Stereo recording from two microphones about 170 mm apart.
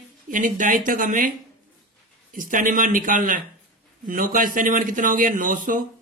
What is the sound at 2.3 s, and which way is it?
Speech, 50° right (ahead or behind).